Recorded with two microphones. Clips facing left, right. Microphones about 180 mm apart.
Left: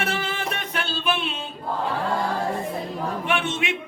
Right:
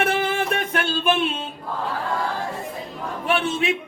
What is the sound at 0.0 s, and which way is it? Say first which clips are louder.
Music: right 5 dB; 50° right (ahead or behind).